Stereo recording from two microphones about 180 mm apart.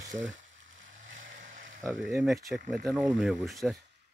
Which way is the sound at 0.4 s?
90° right.